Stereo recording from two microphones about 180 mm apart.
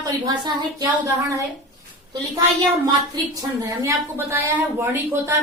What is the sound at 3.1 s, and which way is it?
A woman's voice, 20° right (ahead or behind).